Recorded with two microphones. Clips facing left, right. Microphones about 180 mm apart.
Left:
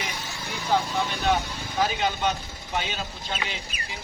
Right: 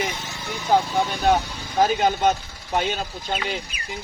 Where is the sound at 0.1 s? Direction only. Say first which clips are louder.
Right 3 dB; 20° right (ahead or behind).